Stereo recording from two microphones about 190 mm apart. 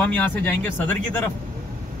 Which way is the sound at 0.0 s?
10° left (ahead or behind).